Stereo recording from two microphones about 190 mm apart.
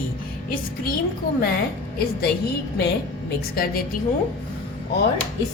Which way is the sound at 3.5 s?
50° left (ahead or behind).